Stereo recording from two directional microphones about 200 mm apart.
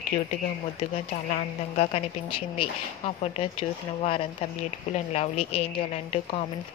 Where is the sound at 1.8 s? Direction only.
30° left (ahead or behind).